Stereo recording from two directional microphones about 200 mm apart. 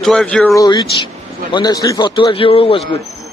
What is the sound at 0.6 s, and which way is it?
A man's voice, 20° left (ahead or behind).